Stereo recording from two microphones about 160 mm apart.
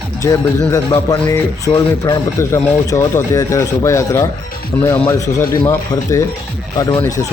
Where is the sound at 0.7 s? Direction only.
20° left (ahead or behind).